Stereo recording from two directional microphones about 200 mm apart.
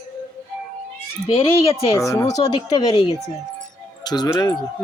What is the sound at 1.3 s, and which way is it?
Speech, 30° left (ahead or behind).